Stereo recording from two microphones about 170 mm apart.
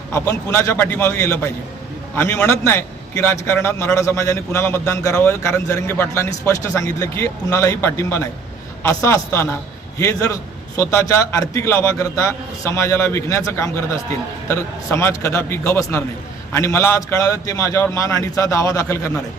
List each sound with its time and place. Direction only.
0.1 s a man's voice: 15° left (ahead or behind)